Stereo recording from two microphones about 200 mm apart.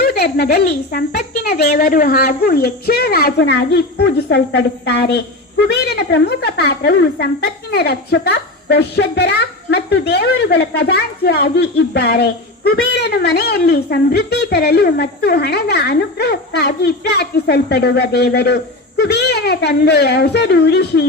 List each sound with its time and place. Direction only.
0.0 s a woman's voice: 50° left (ahead or behind)